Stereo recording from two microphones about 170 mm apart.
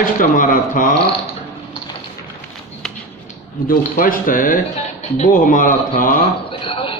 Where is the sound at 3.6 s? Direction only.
55° left (ahead or behind).